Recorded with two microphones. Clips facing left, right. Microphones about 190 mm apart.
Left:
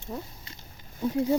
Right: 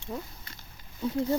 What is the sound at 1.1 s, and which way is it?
Speech, 15° left (ahead or behind).